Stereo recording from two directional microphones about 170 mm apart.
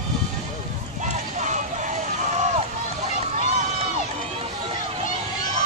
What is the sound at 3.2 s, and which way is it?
Run, 40° right (ahead or behind).